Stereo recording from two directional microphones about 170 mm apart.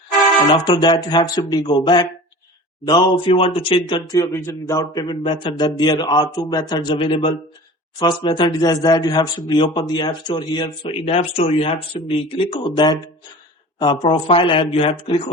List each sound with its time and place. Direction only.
0.5 s speech: 30° left (ahead or behind)